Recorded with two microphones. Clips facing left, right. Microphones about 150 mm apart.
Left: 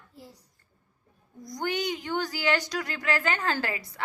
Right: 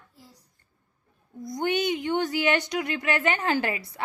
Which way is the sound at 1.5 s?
25° right (ahead or behind).